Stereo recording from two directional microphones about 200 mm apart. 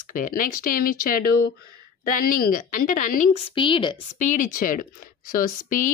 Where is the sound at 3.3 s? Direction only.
25° left (ahead or behind).